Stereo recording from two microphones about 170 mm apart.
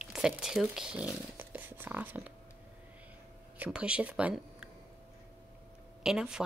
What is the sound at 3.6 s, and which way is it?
Speech, 5° right (ahead or behind).